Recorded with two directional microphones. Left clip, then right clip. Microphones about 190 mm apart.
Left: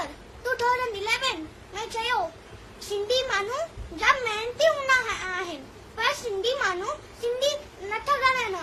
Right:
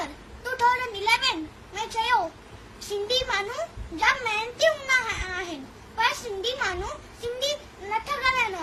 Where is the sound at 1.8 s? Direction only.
10° left (ahead or behind).